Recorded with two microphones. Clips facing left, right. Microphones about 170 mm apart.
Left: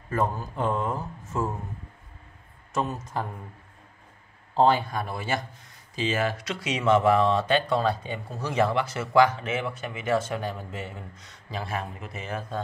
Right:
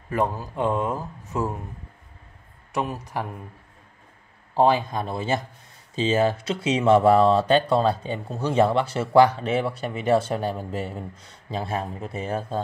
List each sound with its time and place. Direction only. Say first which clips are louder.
0.1 s speech: right 2 dB; 15° right (ahead or behind)
4.6 s speech: right 2 dB; 15° right (ahead or behind); by 12.6 s 30° right (ahead or behind)